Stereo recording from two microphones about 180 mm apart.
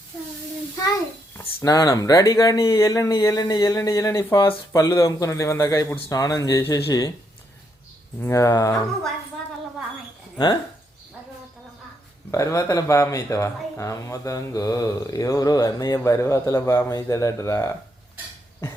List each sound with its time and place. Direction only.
1.4 s speech: 20° left (ahead or behind)
8.2 s speech: 15° left (ahead or behind)
10.3 s speech: 25° left (ahead or behind)
12.3 s speech: 15° left (ahead or behind)